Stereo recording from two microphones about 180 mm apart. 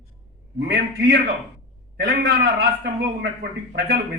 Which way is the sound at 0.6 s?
65° right (ahead or behind).